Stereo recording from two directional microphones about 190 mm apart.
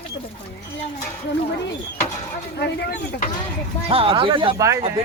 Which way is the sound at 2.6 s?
60° left (ahead or behind).